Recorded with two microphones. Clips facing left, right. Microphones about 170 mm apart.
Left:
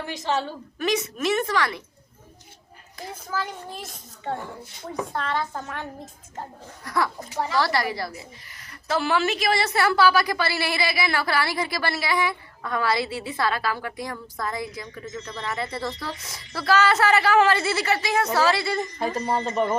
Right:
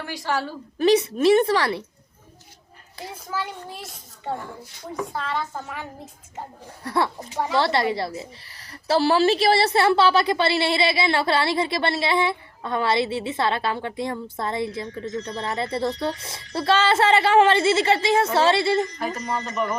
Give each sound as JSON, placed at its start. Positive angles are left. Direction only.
{"t": 0.0, "sound": "speech", "side_deg": 20}
{"t": 0.8, "sound": "a woman's voice", "side_deg": -30}
{"t": 5.1, "sound": "a woman's voice", "side_deg": -5}
{"t": 6.8, "sound": "a woman's voice", "side_deg": -30}
{"t": 18.9, "sound": "speech", "side_deg": 30}